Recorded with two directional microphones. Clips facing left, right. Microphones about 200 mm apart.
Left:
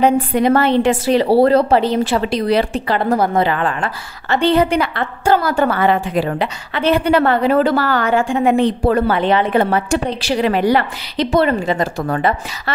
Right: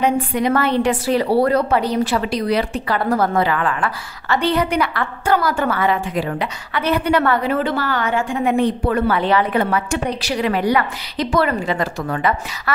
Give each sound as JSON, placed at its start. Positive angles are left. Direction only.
{"t": 0.0, "sound": "a woman's voice", "side_deg": 35}